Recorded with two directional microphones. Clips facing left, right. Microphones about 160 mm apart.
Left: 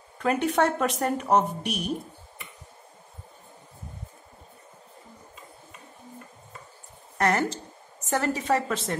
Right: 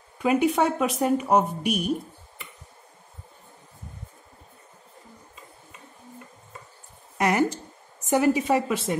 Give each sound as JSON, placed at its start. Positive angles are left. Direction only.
{"t": 0.2, "sound": "speech", "side_deg": -10}
{"t": 7.2, "sound": "a sound", "side_deg": -10}
{"t": 8.1, "sound": "speech", "side_deg": -10}